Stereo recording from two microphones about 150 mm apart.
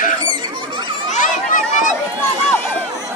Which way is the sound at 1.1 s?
60° left (ahead or behind).